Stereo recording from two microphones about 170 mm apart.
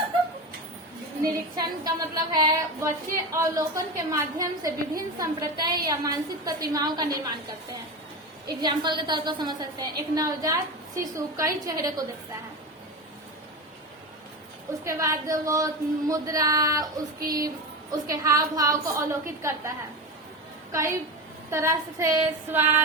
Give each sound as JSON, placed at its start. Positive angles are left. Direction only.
{"t": 1.5, "sound": "a woman's voice", "side_deg": -25}
{"t": 14.8, "sound": "a woman's voice", "side_deg": -20}
{"t": 20.7, "sound": "a sound", "side_deg": -15}